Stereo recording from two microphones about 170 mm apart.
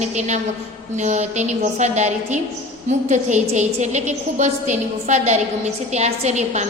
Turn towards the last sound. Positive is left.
turn(degrees=-40)  # may be behind; listen again after turning